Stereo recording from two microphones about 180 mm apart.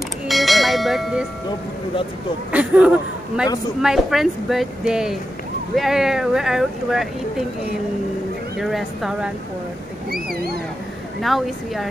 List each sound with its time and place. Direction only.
0.3 s bell: centre (ahead or behind)
2.5 s speech: 5° right (ahead or behind)
8.5 s speech: centre (ahead or behind)
10.3 s speech: 60° right (ahead or behind)
11.1 s speech: centre (ahead or behind)